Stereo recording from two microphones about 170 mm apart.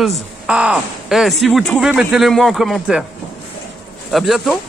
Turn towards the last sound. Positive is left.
turn(degrees=0)  # may be behind; listen again after turning